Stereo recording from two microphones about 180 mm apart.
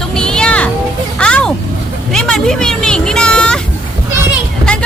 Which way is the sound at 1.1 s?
5° left (ahead or behind).